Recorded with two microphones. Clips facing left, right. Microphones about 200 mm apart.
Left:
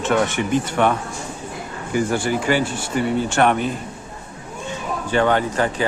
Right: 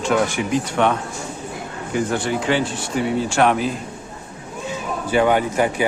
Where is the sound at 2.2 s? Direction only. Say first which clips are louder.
Left 1 dB; 5° left (ahead or behind).